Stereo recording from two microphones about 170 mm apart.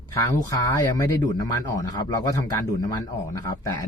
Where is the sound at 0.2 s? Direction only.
20° left (ahead or behind).